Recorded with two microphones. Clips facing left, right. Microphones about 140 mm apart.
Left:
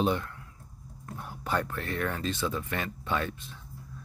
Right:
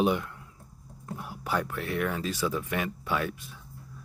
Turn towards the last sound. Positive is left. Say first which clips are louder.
# right 1 dB
turn(degrees=-10)  # may be behind; listen again after turning